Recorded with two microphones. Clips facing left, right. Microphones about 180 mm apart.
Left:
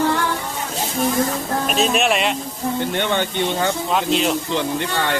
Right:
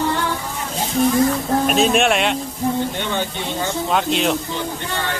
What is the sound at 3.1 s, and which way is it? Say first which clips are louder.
Speech: left 3 dB; 65° left (ahead or behind).